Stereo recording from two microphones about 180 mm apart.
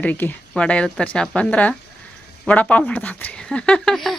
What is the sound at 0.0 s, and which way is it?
Speech, 10° left (ahead or behind).